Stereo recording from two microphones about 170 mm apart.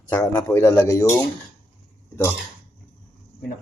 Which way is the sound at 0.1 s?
20° left (ahead or behind).